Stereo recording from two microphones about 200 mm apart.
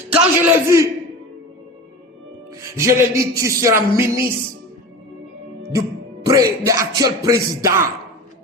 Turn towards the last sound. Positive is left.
turn(degrees=-15)  # may be behind; listen again after turning